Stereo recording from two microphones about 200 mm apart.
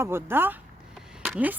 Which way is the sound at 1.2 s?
10° right (ahead or behind).